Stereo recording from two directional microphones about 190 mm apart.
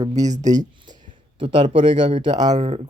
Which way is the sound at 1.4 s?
25° right (ahead or behind).